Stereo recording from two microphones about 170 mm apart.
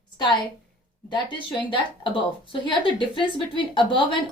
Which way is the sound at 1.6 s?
30° left (ahead or behind).